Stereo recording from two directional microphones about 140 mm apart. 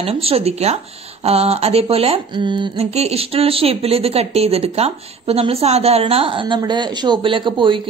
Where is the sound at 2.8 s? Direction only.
50° right (ahead or behind).